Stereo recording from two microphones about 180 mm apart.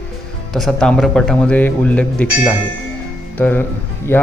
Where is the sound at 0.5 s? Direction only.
Centre (ahead or behind).